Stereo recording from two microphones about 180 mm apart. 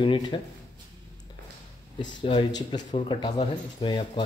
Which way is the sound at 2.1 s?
25° left (ahead or behind).